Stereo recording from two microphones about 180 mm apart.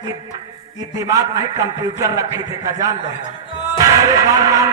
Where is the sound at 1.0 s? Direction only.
20° right (ahead or behind).